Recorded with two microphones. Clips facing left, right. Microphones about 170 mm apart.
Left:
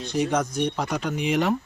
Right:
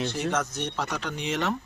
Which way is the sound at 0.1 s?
15° left (ahead or behind).